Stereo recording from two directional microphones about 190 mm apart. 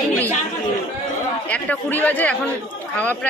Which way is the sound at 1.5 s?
10° left (ahead or behind).